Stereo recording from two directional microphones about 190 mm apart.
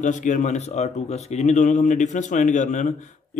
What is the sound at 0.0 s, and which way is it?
Speech, 40° left (ahead or behind).